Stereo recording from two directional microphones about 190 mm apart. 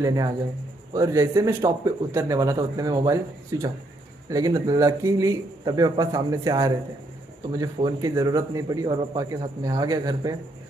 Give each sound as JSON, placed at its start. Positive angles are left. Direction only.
{"t": 0.0, "sound": "a man's voice", "side_deg": -20}